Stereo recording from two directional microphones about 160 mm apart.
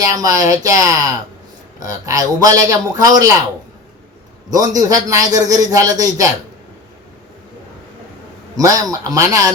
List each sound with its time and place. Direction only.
0.1 s a man's voice: 20° right (ahead or behind)
4.5 s a man's voice: 20° right (ahead or behind)
8.5 s a man's voice: 20° right (ahead or behind)